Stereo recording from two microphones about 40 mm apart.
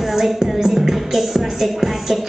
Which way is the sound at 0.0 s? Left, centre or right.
Centre.